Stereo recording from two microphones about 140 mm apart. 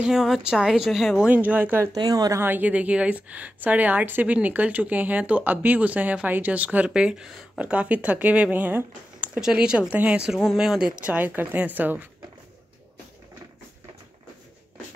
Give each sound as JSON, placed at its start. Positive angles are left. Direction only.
{"t": 0.0, "sound": "speech", "side_deg": 0}
{"t": 2.0, "sound": "speech", "side_deg": -25}
{"t": 2.4, "sound": "a woman's voice", "side_deg": -10}